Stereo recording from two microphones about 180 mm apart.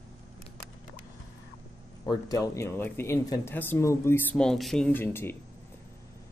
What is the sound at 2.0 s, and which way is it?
Speech, 20° left (ahead or behind).